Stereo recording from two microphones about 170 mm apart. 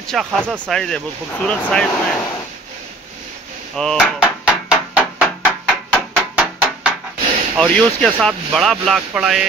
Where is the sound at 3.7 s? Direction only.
5° left (ahead or behind).